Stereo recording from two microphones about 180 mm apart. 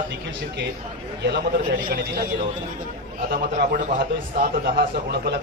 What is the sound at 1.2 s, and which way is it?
Speech, 60° right (ahead or behind).